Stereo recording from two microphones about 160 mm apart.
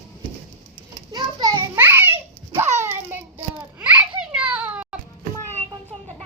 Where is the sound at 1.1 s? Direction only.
25° right (ahead or behind).